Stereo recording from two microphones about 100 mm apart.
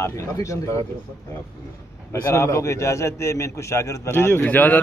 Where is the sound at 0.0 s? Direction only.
30° left (ahead or behind).